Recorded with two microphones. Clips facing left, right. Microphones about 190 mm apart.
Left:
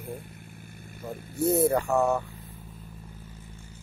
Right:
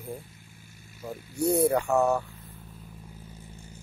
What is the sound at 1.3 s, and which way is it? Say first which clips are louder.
Speech: even; centre (ahead or behind).